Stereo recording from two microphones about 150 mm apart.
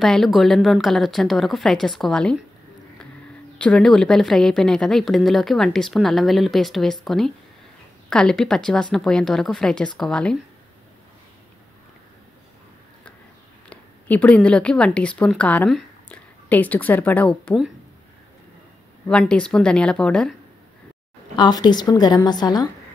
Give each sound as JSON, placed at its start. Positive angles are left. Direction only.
{"t": 0.0, "sound": "a woman's voice", "side_deg": 0}
{"t": 3.5, "sound": "a woman's voice", "side_deg": 5}
{"t": 13.7, "sound": "a woman's voice", "side_deg": 10}
{"t": 19.0, "sound": "a woman's voice", "side_deg": 5}
{"t": 21.4, "sound": "a woman's voice", "side_deg": 30}